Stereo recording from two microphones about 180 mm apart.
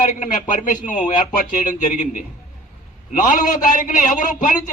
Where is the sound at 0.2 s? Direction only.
45° left (ahead or behind).